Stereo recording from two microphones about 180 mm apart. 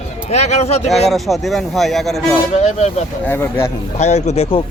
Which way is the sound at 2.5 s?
40° left (ahead or behind).